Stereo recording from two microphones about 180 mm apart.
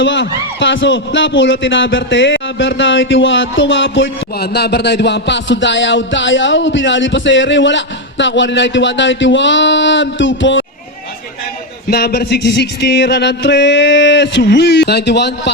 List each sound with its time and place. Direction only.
0.0 s a man's voice: 90° left
11.9 s music: 60° left (ahead or behind)